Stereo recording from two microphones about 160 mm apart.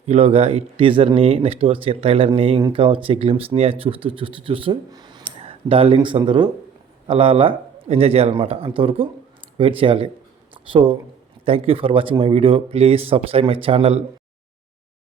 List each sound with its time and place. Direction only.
0.0 s speech: 40° right (ahead or behind); by 5.2 s 25° right (ahead or behind)
5.3 s speech: 35° right (ahead or behind)